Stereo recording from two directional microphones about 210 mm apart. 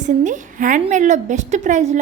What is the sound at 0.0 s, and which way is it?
A woman's voice, 35° right (ahead or behind).